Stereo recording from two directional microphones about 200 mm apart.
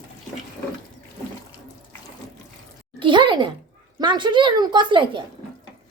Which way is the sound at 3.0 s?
25° right (ahead or behind).